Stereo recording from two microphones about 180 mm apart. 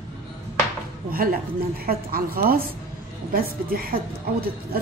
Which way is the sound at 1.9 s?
55° right (ahead or behind).